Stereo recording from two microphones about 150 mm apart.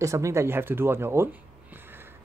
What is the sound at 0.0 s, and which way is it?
Speech, 20° right (ahead or behind).